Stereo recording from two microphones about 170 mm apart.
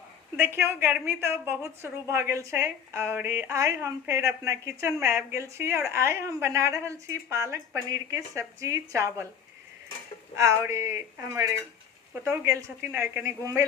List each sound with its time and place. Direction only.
0.3 s a woman's voice: 15° right (ahead or behind)
10.3 s a woman's voice: 15° right (ahead or behind)